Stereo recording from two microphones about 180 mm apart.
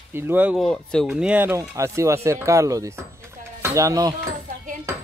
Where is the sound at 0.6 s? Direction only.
5° left (ahead or behind); by 4.1 s 20° right (ahead or behind).